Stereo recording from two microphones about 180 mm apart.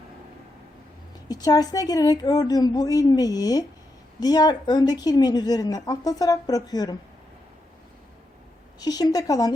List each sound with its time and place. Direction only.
1.3 s a woman's voice: 20° left (ahead or behind)
8.8 s a woman's voice: 20° left (ahead or behind)